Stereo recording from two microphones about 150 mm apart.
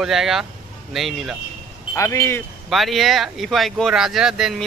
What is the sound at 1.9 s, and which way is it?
Speech, 20° left (ahead or behind).